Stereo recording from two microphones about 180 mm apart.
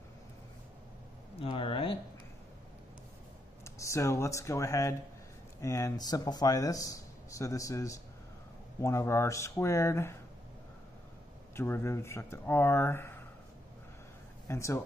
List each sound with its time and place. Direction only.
1.4 s speech: 30° left (ahead or behind)
3.6 s speech: 15° left (ahead or behind)
11.5 s speech: 15° left (ahead or behind)
14.5 s speech: 15° left (ahead or behind)